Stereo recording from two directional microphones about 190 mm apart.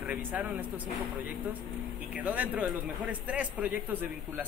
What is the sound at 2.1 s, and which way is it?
A man's voice, 10° right (ahead or behind).